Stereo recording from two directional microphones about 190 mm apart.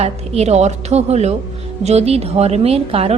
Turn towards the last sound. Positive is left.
turn(degrees=-30)  # may be behind; listen again after turning